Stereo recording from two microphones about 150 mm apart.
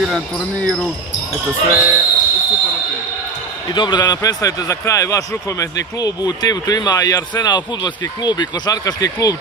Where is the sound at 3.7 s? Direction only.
30° left (ahead or behind).